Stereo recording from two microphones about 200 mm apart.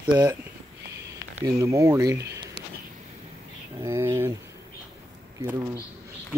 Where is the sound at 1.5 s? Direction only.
15° right (ahead or behind).